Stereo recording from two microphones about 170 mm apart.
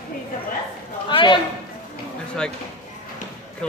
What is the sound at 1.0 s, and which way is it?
Speech, 30° left (ahead or behind).